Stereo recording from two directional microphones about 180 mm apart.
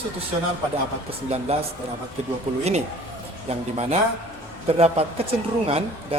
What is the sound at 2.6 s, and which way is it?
A man's voice, 35° right (ahead or behind).